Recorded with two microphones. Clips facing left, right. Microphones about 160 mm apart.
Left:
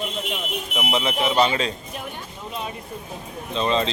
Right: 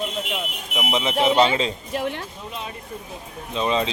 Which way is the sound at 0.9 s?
20° right (ahead or behind).